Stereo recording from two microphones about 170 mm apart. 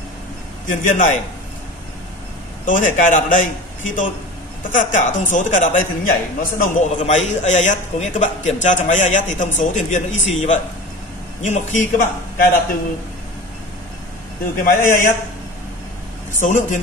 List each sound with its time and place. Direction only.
0.7 s a man's voice: 45° left (ahead or behind)
2.6 s a man's voice: 50° left (ahead or behind)
14.6 s a man's voice: 50° left (ahead or behind)
16.3 s a man's voice: 50° left (ahead or behind)